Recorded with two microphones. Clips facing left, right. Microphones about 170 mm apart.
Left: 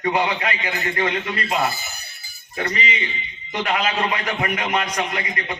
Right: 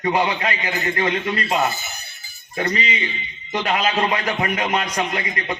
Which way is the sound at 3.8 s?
30° right (ahead or behind).